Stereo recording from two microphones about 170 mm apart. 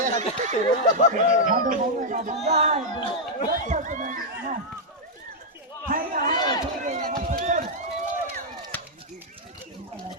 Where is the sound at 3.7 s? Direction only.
50° right (ahead or behind).